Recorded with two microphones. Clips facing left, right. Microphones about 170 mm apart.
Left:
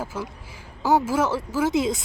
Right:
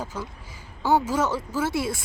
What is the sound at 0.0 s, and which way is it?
A woman's voice, 10° left (ahead or behind).